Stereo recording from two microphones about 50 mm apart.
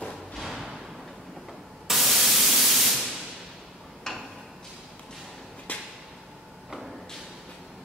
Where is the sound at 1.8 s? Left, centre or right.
Centre.